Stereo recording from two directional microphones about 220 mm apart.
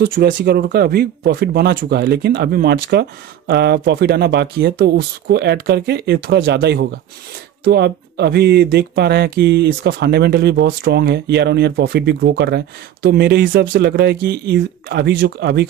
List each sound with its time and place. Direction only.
0.0 s speech: 40° right (ahead or behind)